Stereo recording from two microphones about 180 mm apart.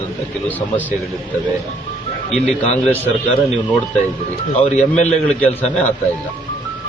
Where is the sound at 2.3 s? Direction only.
5° left (ahead or behind).